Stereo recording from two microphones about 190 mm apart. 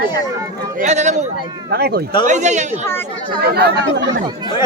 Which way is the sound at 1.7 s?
60° right (ahead or behind).